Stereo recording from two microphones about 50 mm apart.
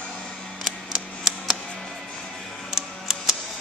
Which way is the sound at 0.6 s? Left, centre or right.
Centre.